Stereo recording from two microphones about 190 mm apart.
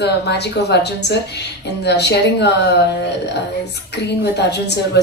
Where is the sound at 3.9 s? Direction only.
60° left (ahead or behind).